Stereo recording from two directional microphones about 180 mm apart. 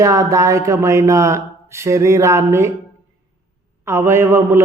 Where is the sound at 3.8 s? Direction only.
15° right (ahead or behind).